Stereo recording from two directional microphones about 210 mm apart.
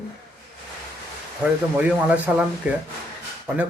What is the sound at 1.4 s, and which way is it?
A man's voice, 5° right (ahead or behind).